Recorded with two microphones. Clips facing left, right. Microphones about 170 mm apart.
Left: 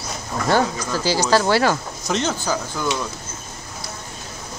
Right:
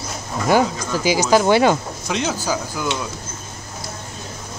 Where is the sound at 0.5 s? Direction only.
15° right (ahead or behind).